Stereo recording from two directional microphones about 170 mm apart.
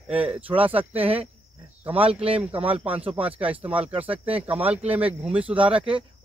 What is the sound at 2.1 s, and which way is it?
Speech, 35° right (ahead or behind).